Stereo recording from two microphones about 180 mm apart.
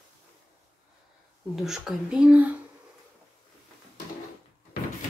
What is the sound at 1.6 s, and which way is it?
Speech, centre (ahead or behind).